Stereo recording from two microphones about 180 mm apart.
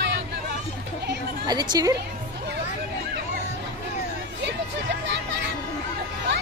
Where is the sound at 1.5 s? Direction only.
20° right (ahead or behind).